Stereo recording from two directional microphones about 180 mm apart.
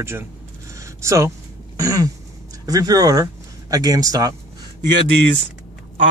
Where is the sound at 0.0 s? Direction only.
15° right (ahead or behind).